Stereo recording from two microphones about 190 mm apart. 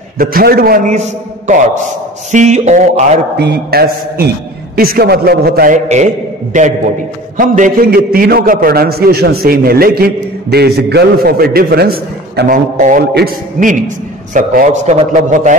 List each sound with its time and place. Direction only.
0.2 s a man's voice: 50° right (ahead or behind)
3.3 s a man's voice: 60° right (ahead or behind)
6.5 s a man's voice: 40° right (ahead or behind)